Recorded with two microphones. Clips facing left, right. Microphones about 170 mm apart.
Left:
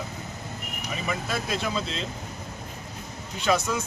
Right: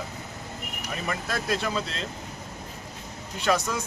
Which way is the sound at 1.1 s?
10° left (ahead or behind).